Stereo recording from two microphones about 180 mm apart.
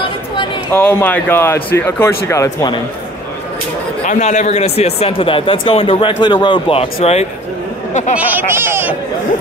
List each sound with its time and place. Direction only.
0.7 s speech: 10° left (ahead or behind)
4.0 s speech: 40° left (ahead or behind)
8.2 s speech: 10° right (ahead or behind)